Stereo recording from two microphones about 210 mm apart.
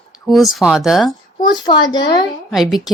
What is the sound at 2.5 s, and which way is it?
Speech, centre (ahead or behind).